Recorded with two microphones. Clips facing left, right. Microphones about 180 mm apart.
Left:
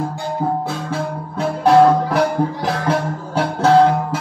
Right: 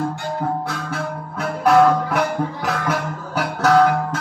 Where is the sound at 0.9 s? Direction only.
30° left (ahead or behind).